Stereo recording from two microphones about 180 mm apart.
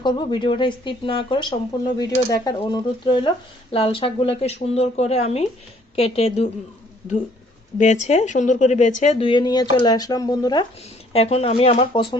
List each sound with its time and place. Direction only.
0.0 s a woman's voice: 25° left (ahead or behind)
7.8 s speech: 40° left (ahead or behind); by 10.7 s 25° left (ahead or behind)
11.1 s speech: 35° left (ahead or behind)